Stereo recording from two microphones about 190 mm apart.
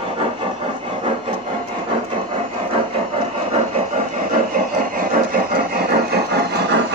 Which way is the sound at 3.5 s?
40° right (ahead or behind).